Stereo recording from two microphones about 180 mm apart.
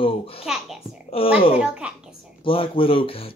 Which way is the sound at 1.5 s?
5° right (ahead or behind).